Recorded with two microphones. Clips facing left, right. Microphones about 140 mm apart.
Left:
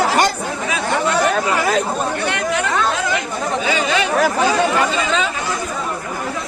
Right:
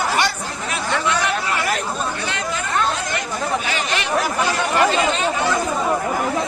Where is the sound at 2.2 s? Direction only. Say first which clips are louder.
Left 5 dB; 70° left (ahead or behind); by 3.2 s 90° left.